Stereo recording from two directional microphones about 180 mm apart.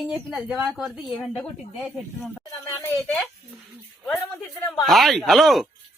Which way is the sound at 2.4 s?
15° left (ahead or behind).